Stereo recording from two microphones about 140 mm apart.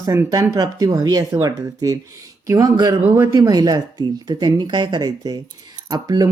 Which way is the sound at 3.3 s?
25° right (ahead or behind).